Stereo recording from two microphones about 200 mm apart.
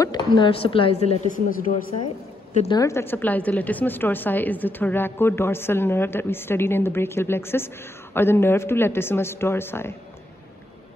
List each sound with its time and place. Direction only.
0.0 s a woman's voice: 20° left (ahead or behind)
2.8 s a woman's voice: 10° left (ahead or behind)